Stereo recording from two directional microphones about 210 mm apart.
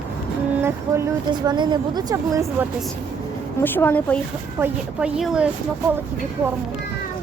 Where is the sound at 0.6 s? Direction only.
15° right (ahead or behind).